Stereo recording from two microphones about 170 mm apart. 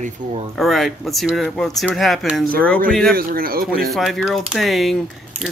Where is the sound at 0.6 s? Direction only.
Centre (ahead or behind).